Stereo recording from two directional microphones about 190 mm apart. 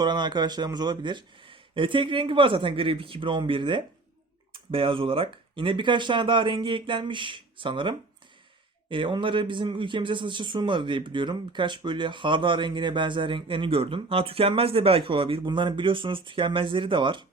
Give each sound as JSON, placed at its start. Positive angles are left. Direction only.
{"t": 0.0, "sound": "speech", "side_deg": -25}